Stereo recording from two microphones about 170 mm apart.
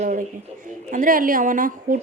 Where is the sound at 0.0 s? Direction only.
50° right (ahead or behind).